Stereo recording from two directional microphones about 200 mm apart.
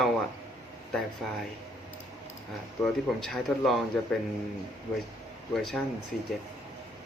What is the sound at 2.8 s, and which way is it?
Speech, centre (ahead or behind).